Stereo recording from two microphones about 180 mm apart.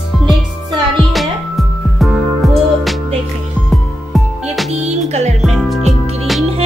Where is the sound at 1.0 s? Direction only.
Centre (ahead or behind).